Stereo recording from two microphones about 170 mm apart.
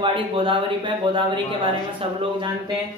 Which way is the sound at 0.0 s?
30° right (ahead or behind).